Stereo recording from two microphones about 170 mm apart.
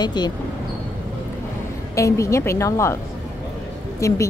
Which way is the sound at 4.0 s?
15° left (ahead or behind).